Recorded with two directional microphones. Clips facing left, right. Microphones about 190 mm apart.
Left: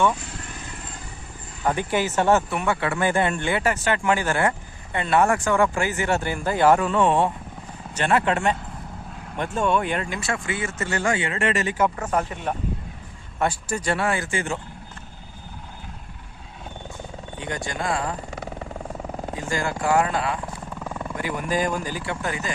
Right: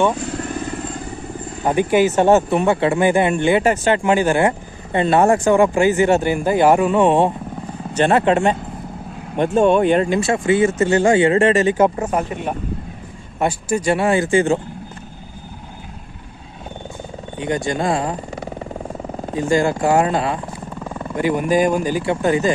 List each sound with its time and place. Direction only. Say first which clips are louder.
0.3 s vehicle: right 14 dB; 50° right (ahead or behind)
1.6 s speech: right 8 dB; 20° right (ahead or behind)
17.4 s speech: right 9 dB; 20° right (ahead or behind)
19.3 s speech: right 11 dB; 25° right (ahead or behind)
20.7 s wild animals: right 3 dB; 10° right (ahead or behind)
21.1 s speech: right 10 dB; 20° right (ahead or behind)